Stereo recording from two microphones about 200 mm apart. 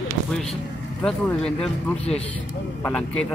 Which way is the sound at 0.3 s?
Centre (ahead or behind).